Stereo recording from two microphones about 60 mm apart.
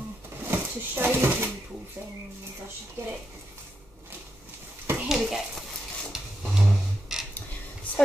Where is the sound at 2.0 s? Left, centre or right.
Right.